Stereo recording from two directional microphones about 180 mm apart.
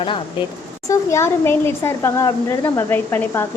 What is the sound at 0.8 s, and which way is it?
Speech, 15° left (ahead or behind).